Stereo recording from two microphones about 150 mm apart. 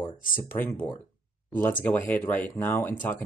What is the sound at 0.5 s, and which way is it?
Speech, 15° left (ahead or behind).